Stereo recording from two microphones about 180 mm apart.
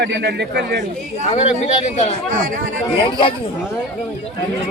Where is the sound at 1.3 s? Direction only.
40° left (ahead or behind).